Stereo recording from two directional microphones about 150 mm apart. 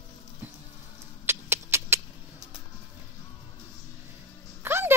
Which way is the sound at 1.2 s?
15° right (ahead or behind).